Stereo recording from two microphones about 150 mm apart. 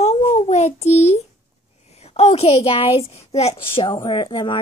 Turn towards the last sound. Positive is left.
turn(degrees=30)  # may be behind; listen again after turning